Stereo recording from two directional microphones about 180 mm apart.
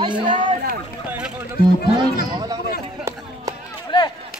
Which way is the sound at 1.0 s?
5° right (ahead or behind).